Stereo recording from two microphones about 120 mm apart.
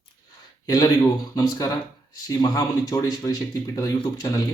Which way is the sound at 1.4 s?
30° left (ahead or behind).